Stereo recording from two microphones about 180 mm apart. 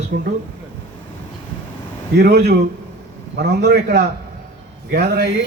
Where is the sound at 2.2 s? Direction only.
65° right (ahead or behind).